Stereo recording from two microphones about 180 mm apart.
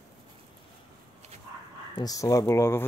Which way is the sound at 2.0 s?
20° left (ahead or behind).